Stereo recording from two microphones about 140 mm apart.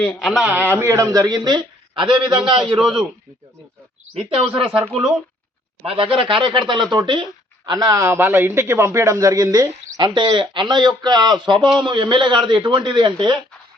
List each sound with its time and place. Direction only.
0.2 s a man's voice: centre (ahead or behind)
0.5 s speech: 15° right (ahead or behind); by 2.2 s 30° right (ahead or behind)
2.7 s a man's voice: centre (ahead or behind)
4.1 s a man's voice: 40° right (ahead or behind)
5.8 s a man's voice: 40° right (ahead or behind)